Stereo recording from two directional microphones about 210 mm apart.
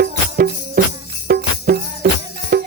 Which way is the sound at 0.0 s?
45° right (ahead or behind).